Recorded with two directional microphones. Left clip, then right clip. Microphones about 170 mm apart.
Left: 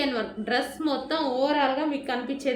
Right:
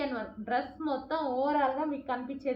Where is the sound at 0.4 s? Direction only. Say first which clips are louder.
Left 4 dB; 30° left (ahead or behind).